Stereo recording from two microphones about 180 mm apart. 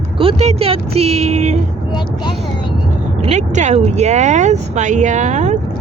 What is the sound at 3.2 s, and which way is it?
Speech, 40° right (ahead or behind).